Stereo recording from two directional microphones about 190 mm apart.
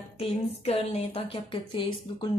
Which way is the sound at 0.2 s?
30° left (ahead or behind).